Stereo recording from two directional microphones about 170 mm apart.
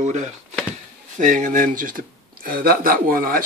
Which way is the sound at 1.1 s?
50° right (ahead or behind).